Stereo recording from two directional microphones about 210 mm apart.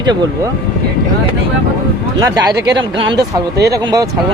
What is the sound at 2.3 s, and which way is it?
Speech, 15° right (ahead or behind).